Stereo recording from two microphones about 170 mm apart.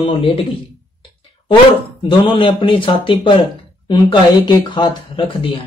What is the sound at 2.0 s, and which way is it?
Speech, 30° left (ahead or behind).